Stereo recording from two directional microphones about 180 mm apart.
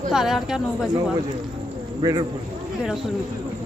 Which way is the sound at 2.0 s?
20° right (ahead or behind).